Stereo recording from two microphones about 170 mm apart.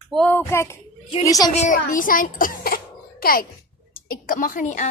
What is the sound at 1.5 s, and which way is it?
A child's voice, 45° left (ahead or behind).